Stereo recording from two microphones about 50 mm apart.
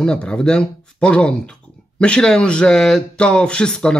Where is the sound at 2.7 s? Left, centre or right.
Centre.